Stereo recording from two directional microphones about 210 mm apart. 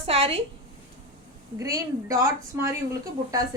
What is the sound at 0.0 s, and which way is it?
Speech, 30° right (ahead or behind).